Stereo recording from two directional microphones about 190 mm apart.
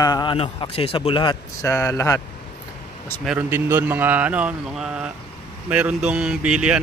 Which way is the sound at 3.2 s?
5° right (ahead or behind).